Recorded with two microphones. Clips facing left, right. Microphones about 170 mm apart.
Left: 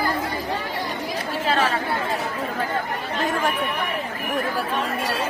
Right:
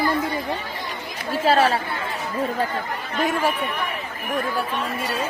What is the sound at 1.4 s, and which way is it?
Speech, 35° right (ahead or behind).